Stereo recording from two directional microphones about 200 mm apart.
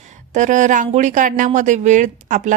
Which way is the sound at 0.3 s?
40° right (ahead or behind).